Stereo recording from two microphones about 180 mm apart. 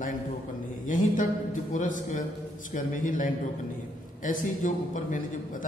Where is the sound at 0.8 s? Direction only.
45° left (ahead or behind).